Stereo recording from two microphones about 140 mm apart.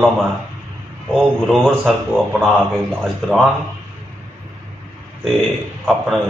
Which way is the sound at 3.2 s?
Centre (ahead or behind).